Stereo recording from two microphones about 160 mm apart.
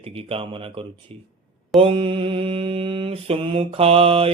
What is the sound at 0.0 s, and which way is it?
Mantra, 35° right (ahead or behind).